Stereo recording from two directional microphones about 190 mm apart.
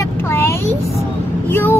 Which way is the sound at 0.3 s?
15° left (ahead or behind).